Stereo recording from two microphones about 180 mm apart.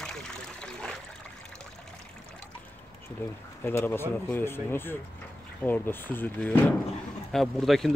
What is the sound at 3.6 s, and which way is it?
Speech, 10° left (ahead or behind).